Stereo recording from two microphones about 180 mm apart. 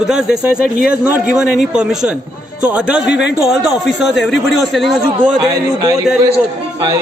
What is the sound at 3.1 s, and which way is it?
Speech, 75° left (ahead or behind).